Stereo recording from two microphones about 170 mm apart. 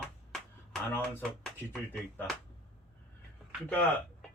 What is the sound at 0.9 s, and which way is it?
Speech, 10° left (ahead or behind).